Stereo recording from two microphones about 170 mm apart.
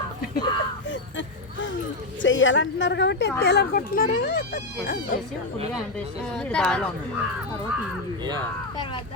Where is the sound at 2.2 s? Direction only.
90° left.